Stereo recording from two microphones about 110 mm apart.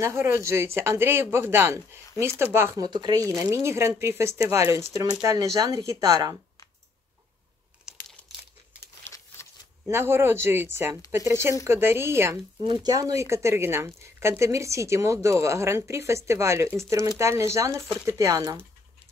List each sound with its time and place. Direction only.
0.0 s speech: 25° right (ahead or behind)
2.8 s speech: 40° right (ahead or behind)
7.9 s crumpling: 5° right (ahead or behind)
9.4 s a sound: 25° left (ahead or behind)
9.8 s speech: 20° right (ahead or behind)
12.6 s speech: 35° right (ahead or behind)